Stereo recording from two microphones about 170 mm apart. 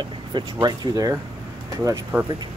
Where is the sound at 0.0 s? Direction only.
25° right (ahead or behind).